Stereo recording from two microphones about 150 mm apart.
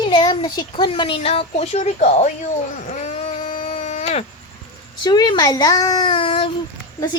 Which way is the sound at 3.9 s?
50° left (ahead or behind).